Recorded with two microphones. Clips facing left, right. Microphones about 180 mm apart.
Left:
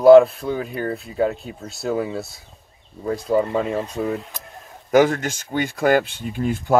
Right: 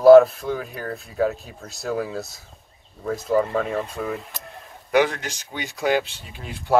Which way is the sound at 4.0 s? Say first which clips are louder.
Left 4 dB; 25° left (ahead or behind).